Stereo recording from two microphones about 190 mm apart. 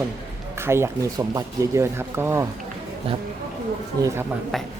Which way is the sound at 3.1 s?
30° right (ahead or behind).